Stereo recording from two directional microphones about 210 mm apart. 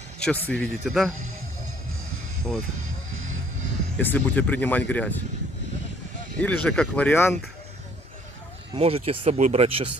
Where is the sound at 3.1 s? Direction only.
70° right (ahead or behind).